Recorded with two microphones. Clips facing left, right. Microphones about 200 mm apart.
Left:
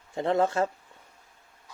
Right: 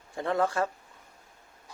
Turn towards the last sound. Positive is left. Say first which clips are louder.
# left 3 dB
turn(degrees=25)  # may be behind; listen again after turning